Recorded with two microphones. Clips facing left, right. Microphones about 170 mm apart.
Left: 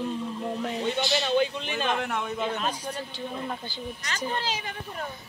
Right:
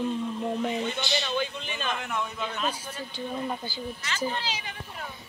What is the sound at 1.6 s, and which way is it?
Speech, 70° left (ahead or behind).